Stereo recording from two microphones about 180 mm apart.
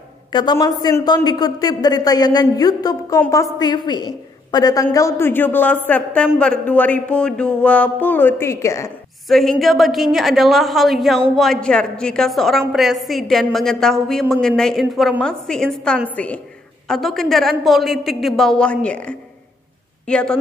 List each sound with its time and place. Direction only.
0.3 s a man's voice: 25° left (ahead or behind)
9.3 s a woman's voice: centre (ahead or behind)